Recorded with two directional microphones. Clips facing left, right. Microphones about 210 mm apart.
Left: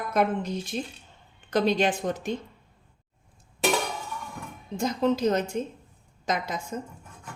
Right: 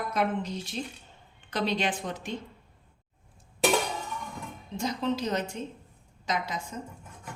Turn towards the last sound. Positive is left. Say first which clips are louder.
# left 3 dB
turn(degrees=50)  # may be behind; listen again after turning